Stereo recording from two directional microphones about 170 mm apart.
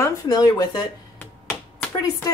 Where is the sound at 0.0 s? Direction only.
20° left (ahead or behind).